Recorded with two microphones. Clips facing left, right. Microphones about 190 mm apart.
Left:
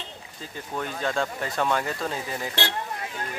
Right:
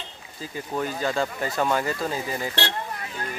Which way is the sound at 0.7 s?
5° right (ahead or behind).